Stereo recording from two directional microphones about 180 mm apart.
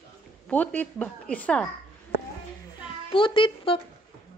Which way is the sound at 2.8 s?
30° left (ahead or behind).